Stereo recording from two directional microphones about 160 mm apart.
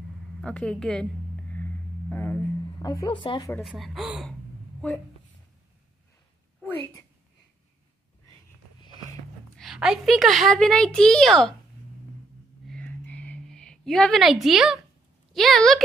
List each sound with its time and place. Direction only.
0.4 s a woman's voice: 5° left (ahead or behind)
1.5 s a sound: 10° left (ahead or behind); by 3.5 s 25° left (ahead or behind)
3.6 s a woman's voice: centre (ahead or behind)
9.6 s a woman's voice: 5° right (ahead or behind)
12.6 s a sound: 10° left (ahead or behind)
15.3 s a woman's voice: centre (ahead or behind)